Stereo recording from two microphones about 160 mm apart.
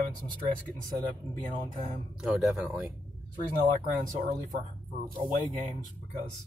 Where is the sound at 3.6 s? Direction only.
55° right (ahead or behind).